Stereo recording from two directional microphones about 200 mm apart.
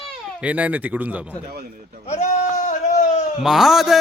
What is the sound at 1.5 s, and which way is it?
Speech, 50° right (ahead or behind).